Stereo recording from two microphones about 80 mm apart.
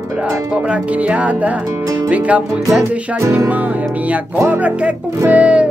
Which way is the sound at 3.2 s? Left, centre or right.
Right.